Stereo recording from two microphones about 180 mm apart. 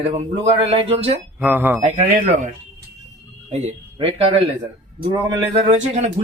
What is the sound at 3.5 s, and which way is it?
Speech, 35° right (ahead or behind).